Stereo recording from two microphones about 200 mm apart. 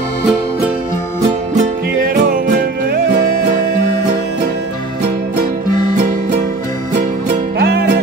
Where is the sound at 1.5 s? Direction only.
40° right (ahead or behind).